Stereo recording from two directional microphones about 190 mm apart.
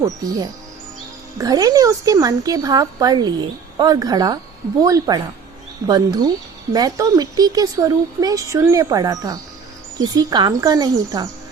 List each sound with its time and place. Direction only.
1.4 s a woman's voice: 20° right (ahead or behind)